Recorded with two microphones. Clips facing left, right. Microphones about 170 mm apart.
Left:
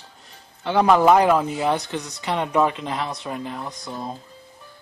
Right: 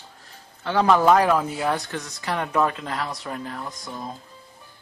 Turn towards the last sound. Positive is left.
turn(degrees=25)  # may be behind; listen again after turning